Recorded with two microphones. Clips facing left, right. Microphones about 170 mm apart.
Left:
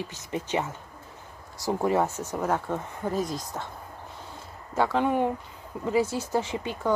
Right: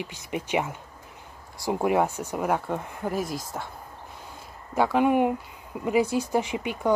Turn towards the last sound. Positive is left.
turn(degrees=-15)  # may be behind; listen again after turning